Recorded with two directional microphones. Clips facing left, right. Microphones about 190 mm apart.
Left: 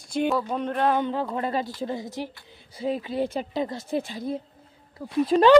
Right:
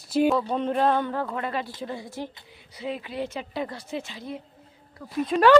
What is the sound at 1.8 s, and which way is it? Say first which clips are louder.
Speech: left 3 dB; 20° left (ahead or behind).